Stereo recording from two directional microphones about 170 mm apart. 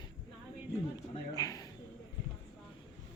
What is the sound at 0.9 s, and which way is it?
Speech, 20° left (ahead or behind).